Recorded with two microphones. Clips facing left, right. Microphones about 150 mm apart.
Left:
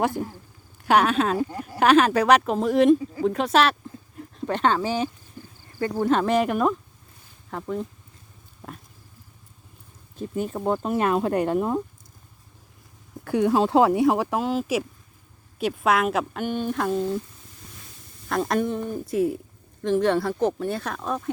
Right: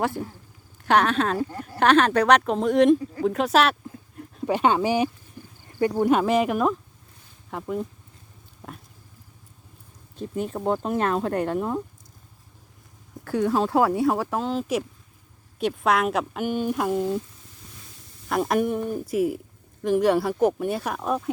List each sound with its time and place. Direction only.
0.9 s speech: 10° left (ahead or behind); by 7.9 s 5° right (ahead or behind)
10.2 s speech: centre (ahead or behind); by 11.8 s 20° left (ahead or behind)
13.2 s speech: 15° left (ahead or behind); by 17.2 s 15° right (ahead or behind)
18.3 s speech: 5° right (ahead or behind)